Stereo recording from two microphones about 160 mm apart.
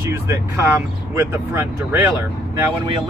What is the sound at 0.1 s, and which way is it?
Speech, 15° right (ahead or behind).